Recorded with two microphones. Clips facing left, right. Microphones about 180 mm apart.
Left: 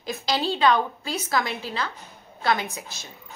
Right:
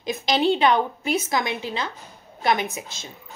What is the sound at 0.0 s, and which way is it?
A woman's voice, 20° right (ahead or behind).